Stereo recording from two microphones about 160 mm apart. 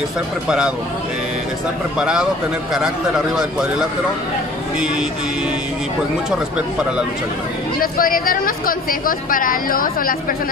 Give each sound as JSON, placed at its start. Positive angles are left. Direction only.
{"t": 0.5, "sound": "a man's voice", "side_deg": -5}
{"t": 2.0, "sound": "a man's voice", "side_deg": -5}
{"t": 7.8, "sound": "speech", "side_deg": 65}